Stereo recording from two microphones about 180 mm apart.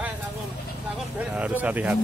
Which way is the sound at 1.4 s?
10° right (ahead or behind).